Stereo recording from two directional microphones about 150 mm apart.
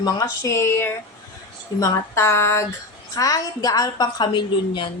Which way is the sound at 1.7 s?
20° left (ahead or behind).